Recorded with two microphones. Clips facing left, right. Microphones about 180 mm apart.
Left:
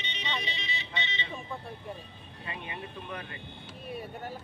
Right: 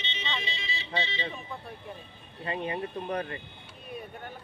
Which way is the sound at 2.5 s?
40° right (ahead or behind).